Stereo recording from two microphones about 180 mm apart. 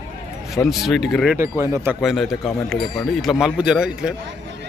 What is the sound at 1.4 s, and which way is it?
Speech, 15° right (ahead or behind).